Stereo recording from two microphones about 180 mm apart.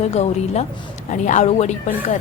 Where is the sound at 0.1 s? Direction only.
35° left (ahead or behind).